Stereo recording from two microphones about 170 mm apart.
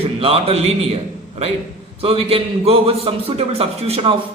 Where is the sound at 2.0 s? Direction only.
35° right (ahead or behind).